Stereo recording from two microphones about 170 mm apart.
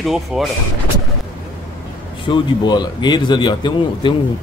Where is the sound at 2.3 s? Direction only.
25° left (ahead or behind).